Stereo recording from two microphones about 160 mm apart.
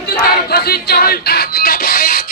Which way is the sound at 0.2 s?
75° left (ahead or behind).